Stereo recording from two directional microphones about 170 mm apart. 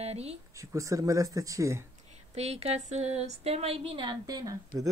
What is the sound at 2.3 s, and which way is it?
A woman's voice, 40° right (ahead or behind).